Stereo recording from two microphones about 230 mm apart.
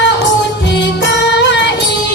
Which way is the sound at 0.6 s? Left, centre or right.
Left.